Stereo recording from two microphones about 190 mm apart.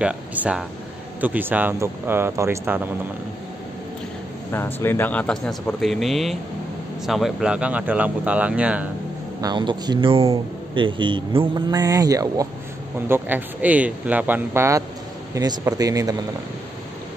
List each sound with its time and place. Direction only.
0.0 s speech: 5° right (ahead or behind)
4.5 s speech: 10° left (ahead or behind); by 8.8 s 5° right (ahead or behind)
9.4 s speech: 25° right (ahead or behind)